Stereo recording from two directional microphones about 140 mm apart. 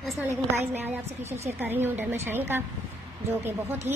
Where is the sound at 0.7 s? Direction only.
15° right (ahead or behind).